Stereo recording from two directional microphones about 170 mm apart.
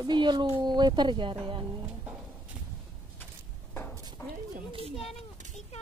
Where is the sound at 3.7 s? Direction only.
10° left (ahead or behind).